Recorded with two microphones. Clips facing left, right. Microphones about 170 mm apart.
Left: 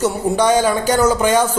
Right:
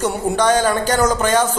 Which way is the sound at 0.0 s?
10° left (ahead or behind).